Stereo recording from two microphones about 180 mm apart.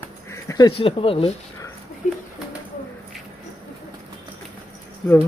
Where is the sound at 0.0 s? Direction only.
15° left (ahead or behind).